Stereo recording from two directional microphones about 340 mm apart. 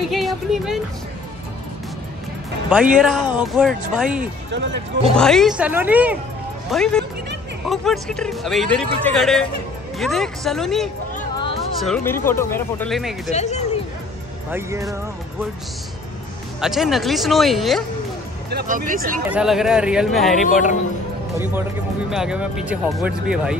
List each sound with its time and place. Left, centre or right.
0.1 s music: centre
2.7 s speech: centre
4.5 s speech: right
5.1 s speech: centre
11.1 s music: centre
11.8 s speech: centre
13.3 s speech: centre
14.5 s speech: centre
16.6 s speech: centre
18.5 s speech: right
19.3 s speech: centre
22.1 s speech: centre